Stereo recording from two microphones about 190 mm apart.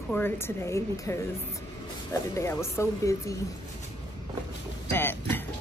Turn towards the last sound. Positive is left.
turn(degrees=10)  # may be behind; listen again after turning